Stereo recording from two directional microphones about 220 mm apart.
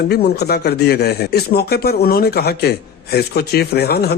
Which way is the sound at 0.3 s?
45° left (ahead or behind).